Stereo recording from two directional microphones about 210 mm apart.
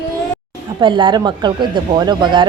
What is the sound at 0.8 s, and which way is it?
Speech, 20° right (ahead or behind).